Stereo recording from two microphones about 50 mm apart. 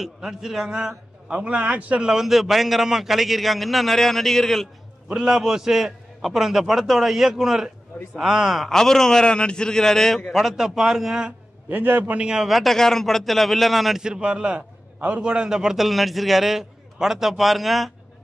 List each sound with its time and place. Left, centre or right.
0.0 s a man's voice: centre; by 2.0 s right
2.0 s a man's voice: centre
5.1 s a man's voice: centre
8.6 s a man's voice: centre
10.3 s a man's voice: centre
11.7 s a man's voice: right
12.0 s a man's voice: right
12.4 s a man's voice: centre
12.7 s a man's voice: centre
14.0 s a man's voice: centre
15.3 s a man's voice: centre